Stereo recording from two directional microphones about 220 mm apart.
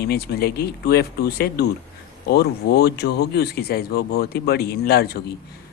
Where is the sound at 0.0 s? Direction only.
45° left (ahead or behind).